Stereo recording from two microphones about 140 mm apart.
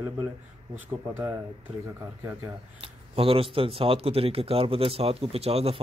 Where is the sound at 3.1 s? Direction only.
40° right (ahead or behind).